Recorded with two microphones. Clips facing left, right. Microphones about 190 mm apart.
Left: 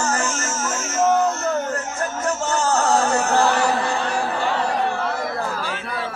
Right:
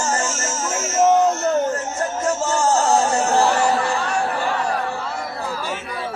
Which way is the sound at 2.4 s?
30° right (ahead or behind).